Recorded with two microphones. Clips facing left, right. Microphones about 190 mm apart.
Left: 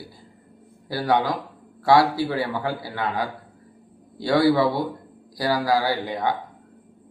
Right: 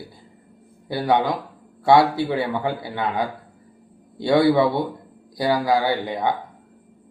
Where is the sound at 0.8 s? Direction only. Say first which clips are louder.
Right 2 dB; 20° right (ahead or behind).